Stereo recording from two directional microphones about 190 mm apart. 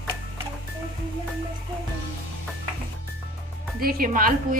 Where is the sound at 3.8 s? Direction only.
50° right (ahead or behind).